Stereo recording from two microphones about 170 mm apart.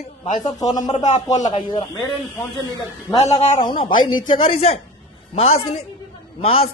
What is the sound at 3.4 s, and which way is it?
A man's voice, 40° left (ahead or behind).